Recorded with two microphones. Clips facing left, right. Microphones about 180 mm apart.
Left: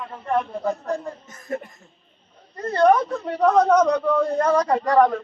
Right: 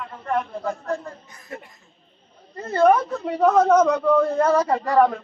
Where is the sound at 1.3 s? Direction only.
45° left (ahead or behind).